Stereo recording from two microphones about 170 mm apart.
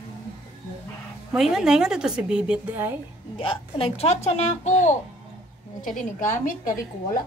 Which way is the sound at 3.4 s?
30° left (ahead or behind).